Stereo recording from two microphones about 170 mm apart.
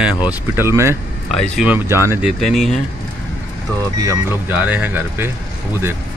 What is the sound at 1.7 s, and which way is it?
Speech, 15° right (ahead or behind).